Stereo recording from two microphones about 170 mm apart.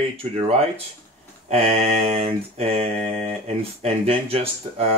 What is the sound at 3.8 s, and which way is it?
Speech, 35° right (ahead or behind).